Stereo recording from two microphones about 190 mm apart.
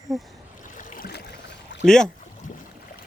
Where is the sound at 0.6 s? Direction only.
45° left (ahead or behind); by 1.9 s 65° left (ahead or behind).